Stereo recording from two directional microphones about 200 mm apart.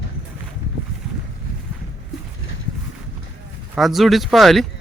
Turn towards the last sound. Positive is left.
turn(degrees=0)  # may be behind; listen again after turning